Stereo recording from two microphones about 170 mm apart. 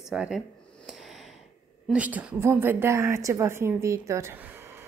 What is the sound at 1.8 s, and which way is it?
A woman's voice, 5° right (ahead or behind).